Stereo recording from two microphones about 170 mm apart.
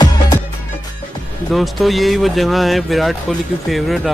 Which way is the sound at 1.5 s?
Centre (ahead or behind).